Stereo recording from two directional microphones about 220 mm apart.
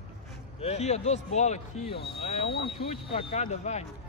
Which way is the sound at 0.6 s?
30° left (ahead or behind).